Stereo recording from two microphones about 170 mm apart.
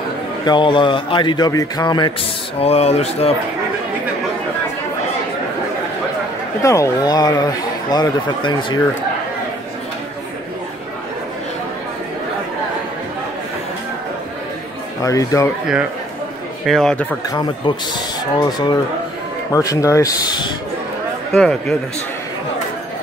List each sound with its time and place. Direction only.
0.5 s speech: 25° left (ahead or behind)
2.6 s speech: 35° left (ahead or behind)
6.6 s speech: 20° left (ahead or behind)
15.0 s speech: 20° left (ahead or behind)
16.6 s speech: centre (ahead or behind)
17.3 s speech: 25° left (ahead or behind)
21.3 s speech: 5° left (ahead or behind)